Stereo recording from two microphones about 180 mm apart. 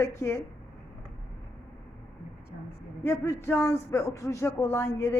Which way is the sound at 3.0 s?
15° left (ahead or behind).